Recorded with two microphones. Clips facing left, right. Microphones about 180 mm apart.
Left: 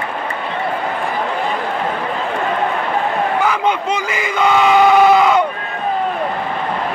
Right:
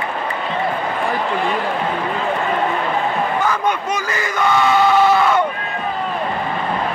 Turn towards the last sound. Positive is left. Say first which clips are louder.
# left 3 dB
turn(degrees=15)  # may be behind; listen again after turning